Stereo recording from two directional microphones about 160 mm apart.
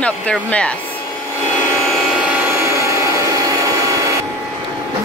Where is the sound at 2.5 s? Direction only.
20° right (ahead or behind).